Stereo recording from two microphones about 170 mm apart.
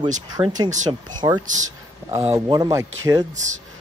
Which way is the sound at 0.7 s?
45° right (ahead or behind).